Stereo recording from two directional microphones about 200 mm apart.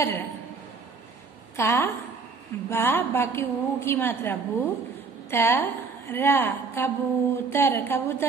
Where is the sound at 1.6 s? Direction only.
10° left (ahead or behind).